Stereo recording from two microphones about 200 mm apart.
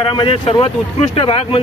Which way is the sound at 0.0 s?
25° left (ahead or behind).